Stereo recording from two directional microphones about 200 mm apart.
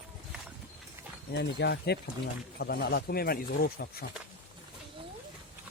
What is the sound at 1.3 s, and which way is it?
Speech, 60° left (ahead or behind).